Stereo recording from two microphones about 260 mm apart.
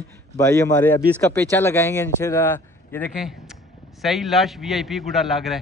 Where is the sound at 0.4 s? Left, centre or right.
Centre.